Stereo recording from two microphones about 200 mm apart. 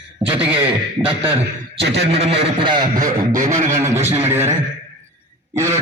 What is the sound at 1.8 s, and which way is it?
Speech, 65° right (ahead or behind).